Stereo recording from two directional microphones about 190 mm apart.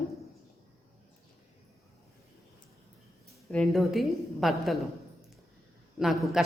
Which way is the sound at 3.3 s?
Centre (ahead or behind).